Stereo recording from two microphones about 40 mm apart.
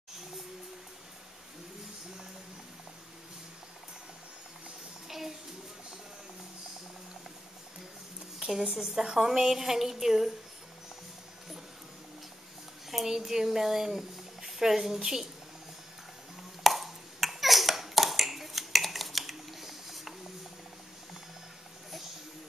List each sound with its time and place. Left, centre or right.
5.0 s a sound: centre
8.4 s a woman's voice: centre
12.9 s a woman's voice: centre
16.6 s finger snapping: centre